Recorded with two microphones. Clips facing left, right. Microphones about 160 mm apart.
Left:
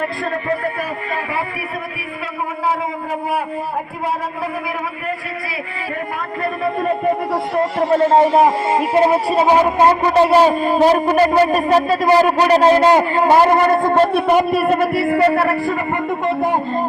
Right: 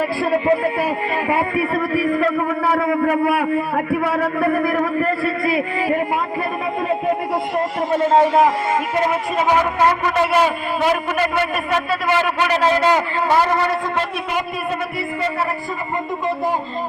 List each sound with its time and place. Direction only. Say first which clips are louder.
2.6 s a man's voice: right 3 dB; 65° right (ahead or behind)
9.0 s a man's voice: left 5 dB; 30° left (ahead or behind)
14.5 s speech: left 9 dB; 65° left (ahead or behind)